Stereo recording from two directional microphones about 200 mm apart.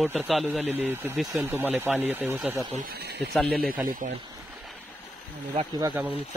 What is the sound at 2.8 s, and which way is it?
Speech, 50° right (ahead or behind).